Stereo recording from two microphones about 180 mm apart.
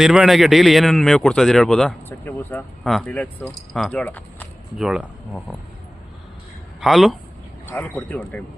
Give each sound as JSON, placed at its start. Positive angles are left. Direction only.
{"t": 0.0, "sound": "a man's voice", "side_deg": 0}
{"t": 4.8, "sound": "a man's voice", "side_deg": -5}
{"t": 6.7, "sound": "speech", "side_deg": 0}